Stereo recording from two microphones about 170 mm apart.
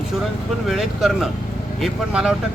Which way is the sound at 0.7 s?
Centre (ahead or behind).